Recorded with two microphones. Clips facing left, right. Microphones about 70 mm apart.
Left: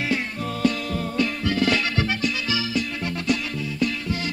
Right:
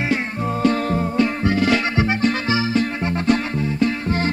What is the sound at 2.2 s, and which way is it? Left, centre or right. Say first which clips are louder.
Music: right 6 dB; right.